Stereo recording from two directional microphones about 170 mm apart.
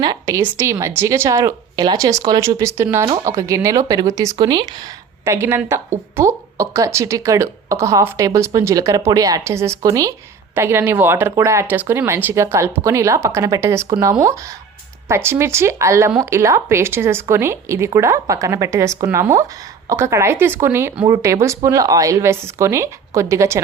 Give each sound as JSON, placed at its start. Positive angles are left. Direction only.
{"t": 0.0, "sound": "a woman's voice", "side_deg": -20}
{"t": 5.2, "sound": "a woman's voice", "side_deg": -15}